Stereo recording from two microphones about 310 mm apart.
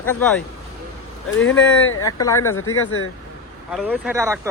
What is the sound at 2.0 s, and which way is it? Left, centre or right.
Speech, centre.